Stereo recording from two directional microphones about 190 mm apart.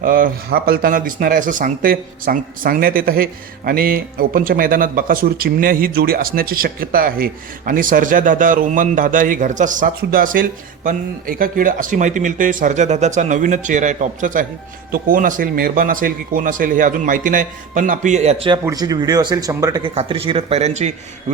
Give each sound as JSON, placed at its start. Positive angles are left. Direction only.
{"t": 0.0, "sound": "speech", "side_deg": -50}
{"t": 19.9, "sound": "a man's voice", "side_deg": -30}